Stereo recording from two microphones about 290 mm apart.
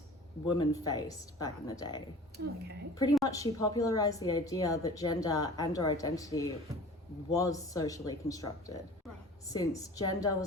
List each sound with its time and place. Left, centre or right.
0.4 s a woman's voice: centre
2.3 s a woman's voice: right
2.9 s a woman's voice: centre